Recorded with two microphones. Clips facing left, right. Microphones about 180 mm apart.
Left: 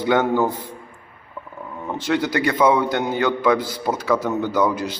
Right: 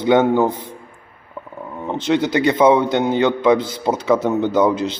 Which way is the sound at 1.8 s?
20° right (ahead or behind).